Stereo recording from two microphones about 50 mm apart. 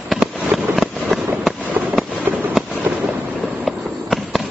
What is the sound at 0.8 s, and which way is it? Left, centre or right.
Fireworks, centre.